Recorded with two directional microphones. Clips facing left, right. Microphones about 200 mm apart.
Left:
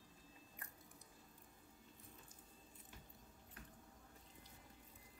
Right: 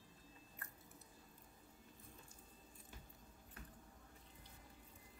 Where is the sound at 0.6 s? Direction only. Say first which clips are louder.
Right 2 dB; 15° left (ahead or behind).